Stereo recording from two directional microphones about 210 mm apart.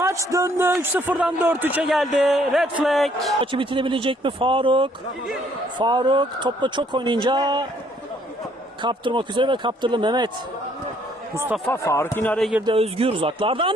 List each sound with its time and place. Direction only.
0.0 s a man's voice: 15° right (ahead or behind)
3.4 s speech: 25° right (ahead or behind)
8.8 s speech: 20° right (ahead or behind)
11.7 s a man's voice: 15° left (ahead or behind)
12.6 s speech: 25° right (ahead or behind)